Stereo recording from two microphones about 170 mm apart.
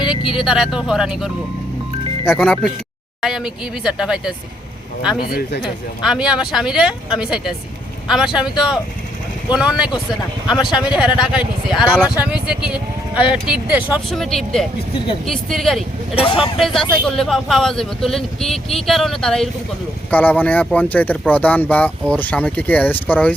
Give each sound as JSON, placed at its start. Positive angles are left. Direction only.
{"t": 0.0, "sound": "vehicle", "side_deg": 25}
{"t": 0.3, "sound": "speech", "side_deg": 0}
{"t": 5.2, "sound": "speech", "side_deg": 65}
{"t": 6.0, "sound": "speech", "side_deg": -5}
{"t": 14.1, "sound": "speech", "side_deg": 0}
{"t": 16.1, "sound": "speech", "side_deg": 35}
{"t": 16.6, "sound": "speech", "side_deg": 0}